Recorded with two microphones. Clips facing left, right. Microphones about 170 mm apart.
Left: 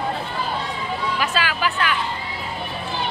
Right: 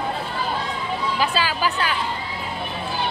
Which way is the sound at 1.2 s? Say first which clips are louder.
Right 2 dB; 30° right (ahead or behind).